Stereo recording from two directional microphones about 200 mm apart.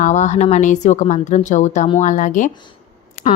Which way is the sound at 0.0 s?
35° left (ahead or behind).